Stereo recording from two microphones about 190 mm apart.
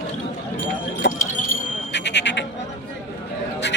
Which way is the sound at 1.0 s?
70° left (ahead or behind).